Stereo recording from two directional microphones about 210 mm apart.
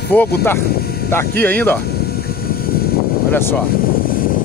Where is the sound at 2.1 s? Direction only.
45° left (ahead or behind).